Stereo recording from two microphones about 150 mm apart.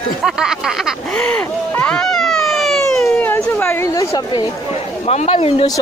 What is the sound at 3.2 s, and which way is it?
Speech, 15° left (ahead or behind).